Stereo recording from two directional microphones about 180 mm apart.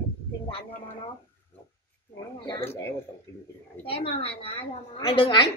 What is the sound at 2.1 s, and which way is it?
Speech, 20° left (ahead or behind).